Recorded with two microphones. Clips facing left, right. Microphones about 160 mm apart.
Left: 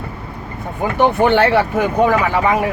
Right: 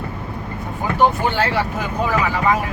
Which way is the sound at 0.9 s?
65° left (ahead or behind).